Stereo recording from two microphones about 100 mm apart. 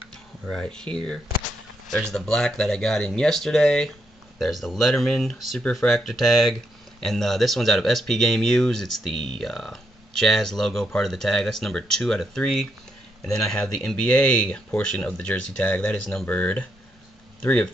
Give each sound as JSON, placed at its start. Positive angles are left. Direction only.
{"t": 0.5, "sound": "speech", "side_deg": 5}
{"t": 2.0, "sound": "speech", "side_deg": 5}